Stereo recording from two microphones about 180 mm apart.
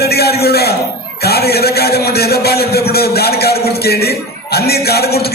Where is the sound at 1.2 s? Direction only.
60° left (ahead or behind).